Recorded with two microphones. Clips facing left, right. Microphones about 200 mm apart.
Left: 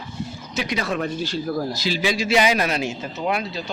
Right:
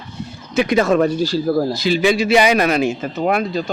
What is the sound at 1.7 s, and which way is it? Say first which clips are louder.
A man's voice: right 7 dB; 60° right (ahead or behind).